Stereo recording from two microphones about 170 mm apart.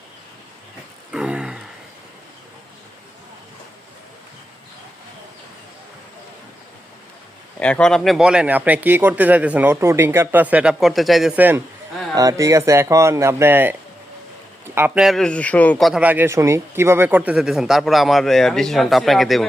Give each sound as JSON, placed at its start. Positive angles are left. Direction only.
{"t": 1.1, "sound": "a sound", "side_deg": -5}
{"t": 7.6, "sound": "a man's voice", "side_deg": 5}
{"t": 14.8, "sound": "a man's voice", "side_deg": -10}